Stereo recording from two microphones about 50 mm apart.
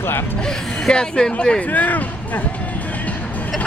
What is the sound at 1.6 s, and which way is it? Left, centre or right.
Speech, left.